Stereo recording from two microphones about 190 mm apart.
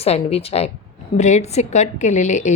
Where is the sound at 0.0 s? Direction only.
30° left (ahead or behind).